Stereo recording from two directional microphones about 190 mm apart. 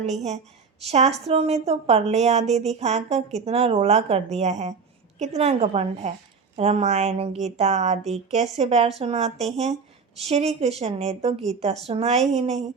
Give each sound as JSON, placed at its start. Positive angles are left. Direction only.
{"t": 0.0, "sound": "a woman's voice", "side_deg": -35}